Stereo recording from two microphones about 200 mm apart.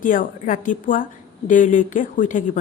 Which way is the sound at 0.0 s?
40° left (ahead or behind).